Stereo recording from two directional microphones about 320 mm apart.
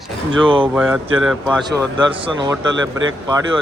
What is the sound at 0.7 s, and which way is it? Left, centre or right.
Speech, centre.